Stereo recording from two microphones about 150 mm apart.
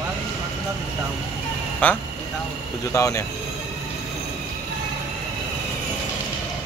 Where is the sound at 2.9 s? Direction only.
20° left (ahead or behind).